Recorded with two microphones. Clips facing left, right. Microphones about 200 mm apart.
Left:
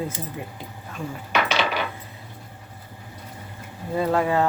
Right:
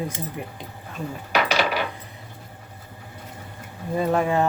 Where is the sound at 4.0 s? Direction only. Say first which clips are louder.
Even; 20° right (ahead or behind).